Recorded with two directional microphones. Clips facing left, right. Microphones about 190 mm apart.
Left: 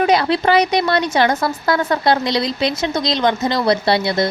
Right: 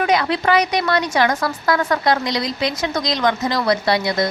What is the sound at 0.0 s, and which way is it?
Speech, 30° left (ahead or behind).